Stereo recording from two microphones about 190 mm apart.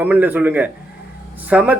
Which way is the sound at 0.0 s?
10° right (ahead or behind).